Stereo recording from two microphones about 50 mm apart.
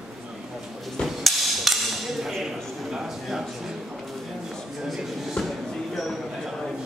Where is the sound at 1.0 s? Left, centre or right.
Centre.